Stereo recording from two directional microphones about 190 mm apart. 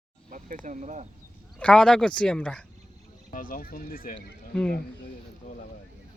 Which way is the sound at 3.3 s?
45° left (ahead or behind).